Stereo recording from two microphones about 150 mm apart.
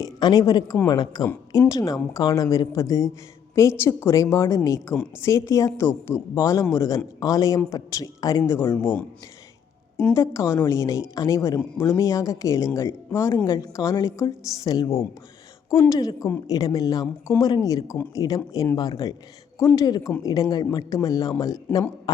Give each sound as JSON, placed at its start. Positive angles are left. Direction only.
{"t": 0.0, "sound": "speech", "side_deg": 25}
{"t": 10.2, "sound": "speech", "side_deg": 20}